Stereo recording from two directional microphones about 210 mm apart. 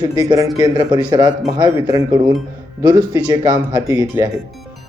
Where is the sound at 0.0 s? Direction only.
20° right (ahead or behind).